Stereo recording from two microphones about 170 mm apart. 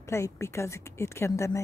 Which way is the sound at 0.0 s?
15° left (ahead or behind).